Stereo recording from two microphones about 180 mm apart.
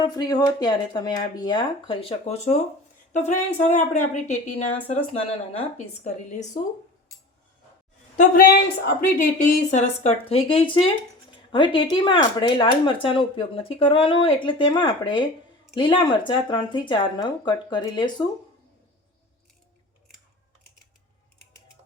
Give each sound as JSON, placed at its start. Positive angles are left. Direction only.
{"t": 0.0, "sound": "a woman's voice", "side_deg": 25}
{"t": 8.1, "sound": "a woman's voice", "side_deg": 50}